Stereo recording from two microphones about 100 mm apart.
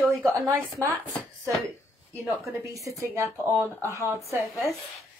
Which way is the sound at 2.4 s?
30° right (ahead or behind).